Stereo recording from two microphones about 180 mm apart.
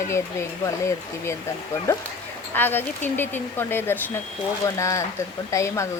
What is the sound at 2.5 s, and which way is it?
Speech, 10° left (ahead or behind).